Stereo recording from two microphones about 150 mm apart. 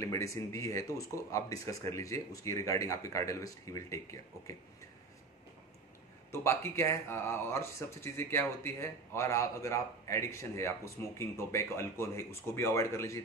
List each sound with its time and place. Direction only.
0.0 s speech: 20° left (ahead or behind)
6.3 s speech: 15° left (ahead or behind)